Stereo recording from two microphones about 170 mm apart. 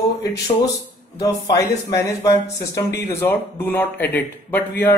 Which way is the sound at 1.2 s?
20° left (ahead or behind).